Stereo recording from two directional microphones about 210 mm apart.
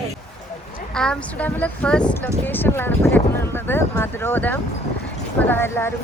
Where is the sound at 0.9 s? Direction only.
5° left (ahead or behind).